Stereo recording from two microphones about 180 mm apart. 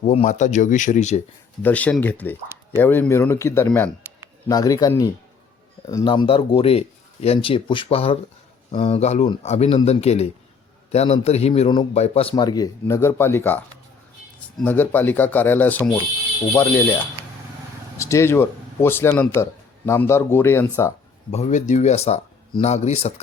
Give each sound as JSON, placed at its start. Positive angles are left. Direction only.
{"t": 0.0, "sound": "speech", "side_deg": 40}
{"t": 1.6, "sound": "speech", "side_deg": 10}
{"t": 4.4, "sound": "a man's voice", "side_deg": 20}
{"t": 12.3, "sound": "speech", "side_deg": 20}
{"t": 17.9, "sound": "speech", "side_deg": 15}
{"t": 21.3, "sound": "speech", "side_deg": 40}